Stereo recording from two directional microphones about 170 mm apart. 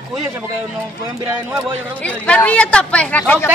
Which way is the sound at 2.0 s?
10° left (ahead or behind).